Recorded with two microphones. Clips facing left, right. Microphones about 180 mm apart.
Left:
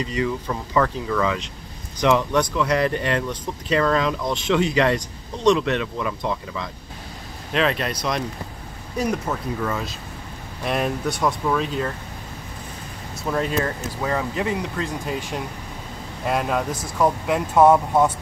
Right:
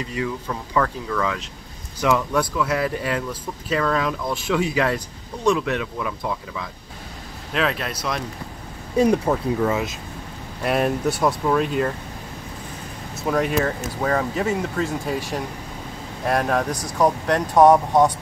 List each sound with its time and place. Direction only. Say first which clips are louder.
0.0 s speech: left 2 dB; centre (ahead or behind)
8.9 s speech: right 6 dB; 30° right (ahead or behind)
10.6 s speech: right 3 dB; 5° right (ahead or behind)
13.1 s speech: right 2 dB; 5° right (ahead or behind)
17.6 s speech: right 1 dB; 15° right (ahead or behind)